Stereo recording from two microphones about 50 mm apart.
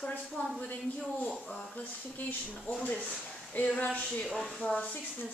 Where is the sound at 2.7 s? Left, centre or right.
Right.